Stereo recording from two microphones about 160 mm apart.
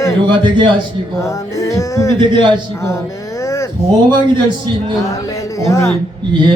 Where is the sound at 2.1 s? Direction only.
30° right (ahead or behind).